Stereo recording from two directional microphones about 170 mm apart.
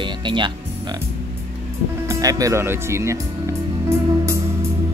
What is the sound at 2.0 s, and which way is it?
Speech, 20° right (ahead or behind).